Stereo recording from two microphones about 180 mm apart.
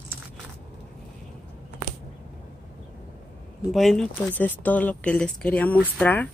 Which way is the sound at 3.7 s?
Centre (ahead or behind).